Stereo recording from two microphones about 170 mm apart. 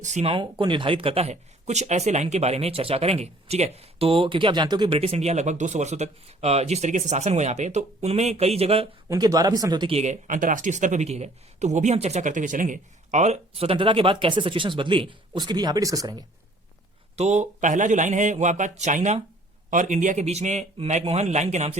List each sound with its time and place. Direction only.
0.0 s speech: 40° right (ahead or behind)
9.0 s speech: 20° right (ahead or behind)
9.9 s speech: 45° right (ahead or behind); by 16.2 s 20° right (ahead or behind)
17.2 s speech: 45° right (ahead or behind)